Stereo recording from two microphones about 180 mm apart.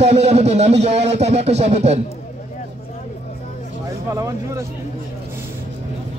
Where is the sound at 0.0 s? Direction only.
35° right (ahead or behind).